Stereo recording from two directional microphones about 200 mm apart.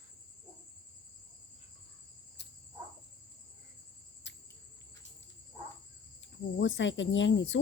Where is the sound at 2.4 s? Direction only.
55° left (ahead or behind).